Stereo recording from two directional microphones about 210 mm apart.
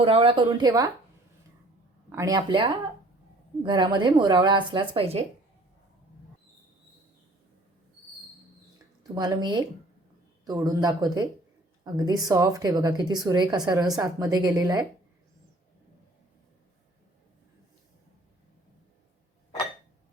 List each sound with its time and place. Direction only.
0.0 s a woman's voice: 25° right (ahead or behind)
2.0 s a woman's voice: 15° right (ahead or behind)
9.1 s a woman's voice: 20° right (ahead or behind)